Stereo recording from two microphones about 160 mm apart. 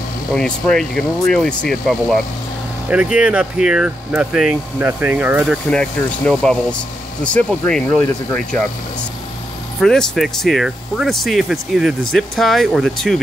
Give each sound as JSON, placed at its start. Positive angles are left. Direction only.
{"t": 0.3, "sound": "speech", "side_deg": 5}
{"t": 2.9, "sound": "speech", "side_deg": -10}
{"t": 5.7, "sound": "speech", "side_deg": 5}
{"t": 9.8, "sound": "speech", "side_deg": 0}